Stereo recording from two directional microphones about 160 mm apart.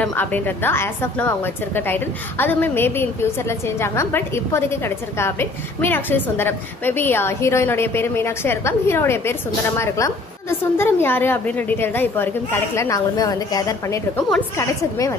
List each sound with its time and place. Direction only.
0.0 s a woman's voice: 10° left (ahead or behind)